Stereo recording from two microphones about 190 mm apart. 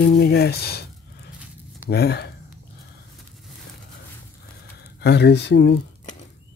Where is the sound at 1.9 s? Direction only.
60° left (ahead or behind).